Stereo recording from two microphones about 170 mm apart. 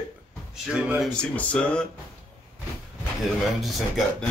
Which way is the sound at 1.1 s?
5° left (ahead or behind).